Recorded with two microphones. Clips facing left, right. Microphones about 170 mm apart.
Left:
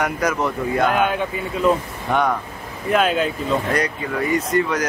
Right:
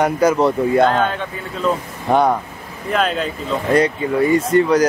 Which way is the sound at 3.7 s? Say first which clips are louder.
Right 7 dB; 25° right (ahead or behind).